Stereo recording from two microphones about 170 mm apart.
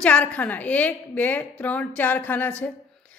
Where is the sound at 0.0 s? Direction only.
10° left (ahead or behind).